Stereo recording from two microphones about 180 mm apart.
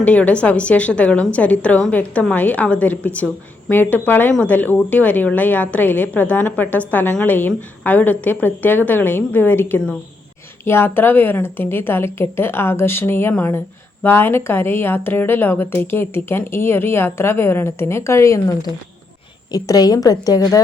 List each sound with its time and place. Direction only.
0.0 s a woman's voice: 10° left (ahead or behind)